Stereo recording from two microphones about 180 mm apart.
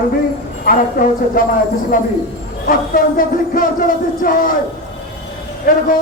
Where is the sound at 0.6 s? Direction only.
50° left (ahead or behind).